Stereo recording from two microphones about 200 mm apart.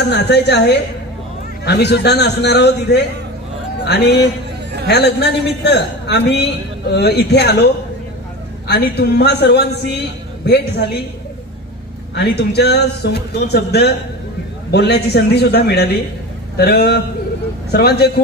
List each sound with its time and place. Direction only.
0.1 s a man's voice: 55° left (ahead or behind)
12.2 s a man's voice: 55° left (ahead or behind)